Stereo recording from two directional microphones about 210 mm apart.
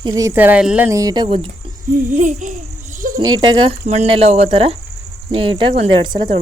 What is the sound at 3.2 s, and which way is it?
Speech, 20° right (ahead or behind).